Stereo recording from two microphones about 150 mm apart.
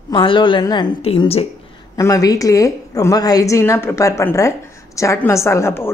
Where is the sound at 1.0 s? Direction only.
40° left (ahead or behind).